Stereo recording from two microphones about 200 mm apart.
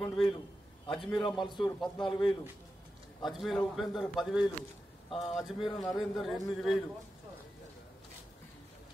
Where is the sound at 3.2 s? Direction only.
Centre (ahead or behind).